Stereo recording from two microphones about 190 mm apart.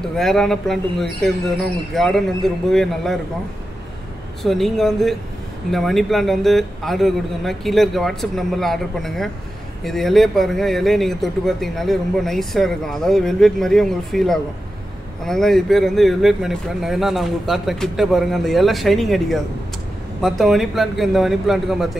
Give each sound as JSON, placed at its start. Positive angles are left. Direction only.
{"t": 0.0, "sound": "speech", "side_deg": 0}
{"t": 4.4, "sound": "speech", "side_deg": 0}